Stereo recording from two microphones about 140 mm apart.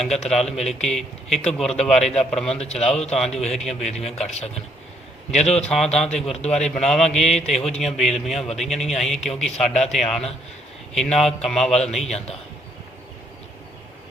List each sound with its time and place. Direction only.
0.3 s speech: centre (ahead or behind)
2.5 s a man's voice: 50° left (ahead or behind)
3.1 s speech: 5° left (ahead or behind)
4.3 s a man's voice: 50° left (ahead or behind)
5.6 s speech: centre (ahead or behind)
6.3 s a man's voice: 50° left (ahead or behind)
6.7 s speech: centre (ahead or behind)